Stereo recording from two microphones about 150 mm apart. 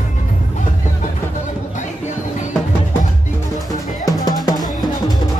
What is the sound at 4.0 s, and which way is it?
Music, 25° left (ahead or behind).